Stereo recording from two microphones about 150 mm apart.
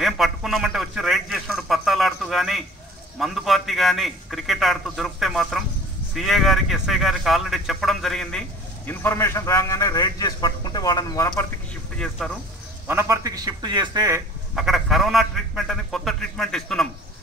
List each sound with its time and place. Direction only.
0.0 s a sound: centre (ahead or behind)
6.1 s speech: centre (ahead or behind); by 11.4 s 20° left (ahead or behind)
12.8 s a man's voice: 20° right (ahead or behind)
14.5 s a man's voice: 5° right (ahead or behind)